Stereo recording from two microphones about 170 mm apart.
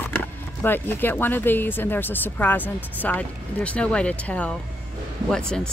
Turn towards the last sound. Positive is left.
turn(degrees=5)  # may be behind; listen again after turning